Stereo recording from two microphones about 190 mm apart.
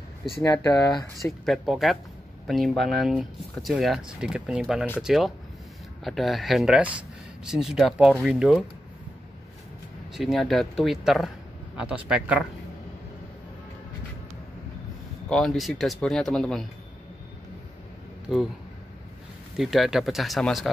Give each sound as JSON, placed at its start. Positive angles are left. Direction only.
{"t": 0.4, "sound": "speech", "side_deg": 20}
{"t": 1.2, "sound": "speech", "side_deg": 0}
{"t": 10.1, "sound": "speech", "side_deg": 0}
{"t": 15.2, "sound": "speech", "side_deg": 5}
{"t": 18.3, "sound": "speech", "side_deg": 0}
{"t": 19.5, "sound": "speech", "side_deg": 0}